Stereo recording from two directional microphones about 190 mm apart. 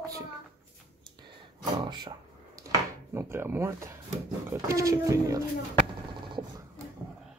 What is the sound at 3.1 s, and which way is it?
Speech, 15° right (ahead or behind).